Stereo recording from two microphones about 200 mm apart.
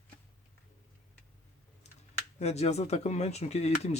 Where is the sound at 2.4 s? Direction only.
35° left (ahead or behind).